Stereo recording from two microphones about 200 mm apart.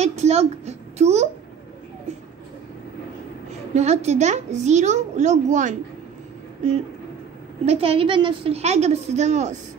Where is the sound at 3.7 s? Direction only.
35° right (ahead or behind).